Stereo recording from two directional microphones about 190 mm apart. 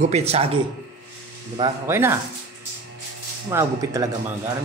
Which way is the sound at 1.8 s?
15° right (ahead or behind).